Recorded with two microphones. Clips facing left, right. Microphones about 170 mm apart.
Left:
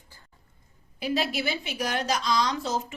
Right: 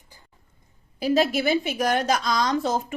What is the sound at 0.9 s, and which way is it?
A woman's voice, 40° right (ahead or behind).